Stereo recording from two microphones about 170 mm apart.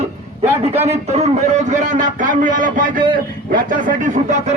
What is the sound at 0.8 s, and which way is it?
A man's voice, 40° right (ahead or behind).